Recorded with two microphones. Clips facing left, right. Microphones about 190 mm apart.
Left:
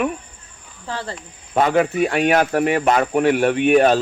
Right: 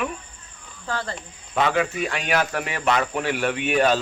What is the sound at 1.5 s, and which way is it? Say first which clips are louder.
Speech: left 5 dB; 45° left (ahead or behind).